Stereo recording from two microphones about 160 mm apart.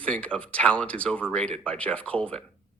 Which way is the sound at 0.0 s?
5° left (ahead or behind).